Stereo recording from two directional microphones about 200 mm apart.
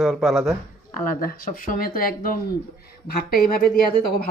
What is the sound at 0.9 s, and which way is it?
Speech, 45° left (ahead or behind).